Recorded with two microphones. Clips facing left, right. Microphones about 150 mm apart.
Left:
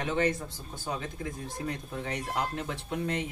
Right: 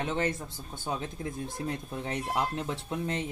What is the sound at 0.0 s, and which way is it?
Speech, 25° right (ahead or behind).